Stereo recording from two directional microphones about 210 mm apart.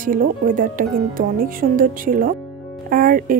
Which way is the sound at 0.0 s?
40° right (ahead or behind).